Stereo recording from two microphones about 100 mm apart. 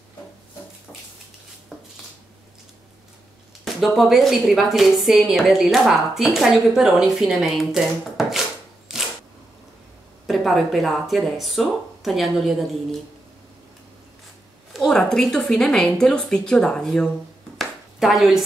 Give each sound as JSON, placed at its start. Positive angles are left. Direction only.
{"t": 3.6, "sound": "a woman's voice", "side_deg": 0}
{"t": 10.2, "sound": "a woman's voice", "side_deg": 0}
{"t": 14.7, "sound": "a woman's voice", "side_deg": 5}
{"t": 17.6, "sound": "a sound", "side_deg": 0}